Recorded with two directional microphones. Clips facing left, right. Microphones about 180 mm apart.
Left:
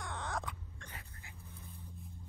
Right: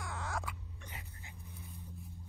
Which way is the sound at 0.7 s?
15° right (ahead or behind).